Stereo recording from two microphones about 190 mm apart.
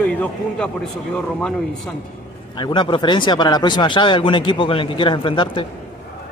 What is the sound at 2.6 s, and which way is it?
Speech, 25° left (ahead or behind).